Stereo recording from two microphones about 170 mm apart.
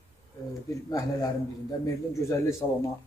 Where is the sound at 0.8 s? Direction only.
20° left (ahead or behind).